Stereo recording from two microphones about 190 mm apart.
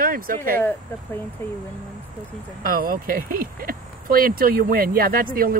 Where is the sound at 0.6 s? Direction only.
10° left (ahead or behind).